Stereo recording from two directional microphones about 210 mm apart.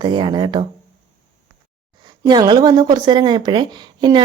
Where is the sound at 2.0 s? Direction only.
20° right (ahead or behind).